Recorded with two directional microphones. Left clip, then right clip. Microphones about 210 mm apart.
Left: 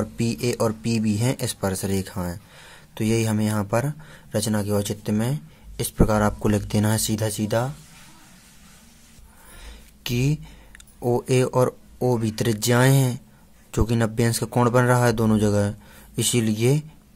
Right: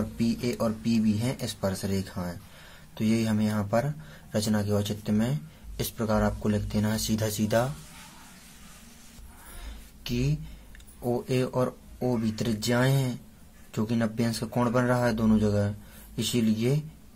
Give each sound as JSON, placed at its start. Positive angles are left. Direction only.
{"t": 0.2, "sound": "speech", "side_deg": 35}
{"t": 10.0, "sound": "speech", "side_deg": 35}